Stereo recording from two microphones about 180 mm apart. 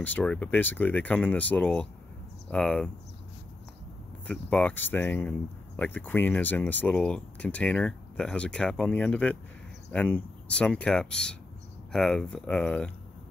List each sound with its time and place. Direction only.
0.0 s speech: 10° left (ahead or behind)
4.3 s speech: 10° left (ahead or behind)